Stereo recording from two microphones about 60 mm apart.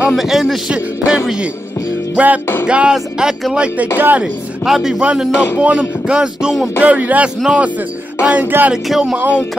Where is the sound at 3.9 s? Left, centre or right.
Right.